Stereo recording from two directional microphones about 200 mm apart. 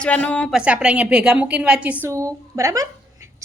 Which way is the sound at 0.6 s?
5° right (ahead or behind).